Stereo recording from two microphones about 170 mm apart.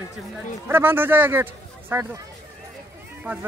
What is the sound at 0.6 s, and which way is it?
A man's voice, 10° right (ahead or behind).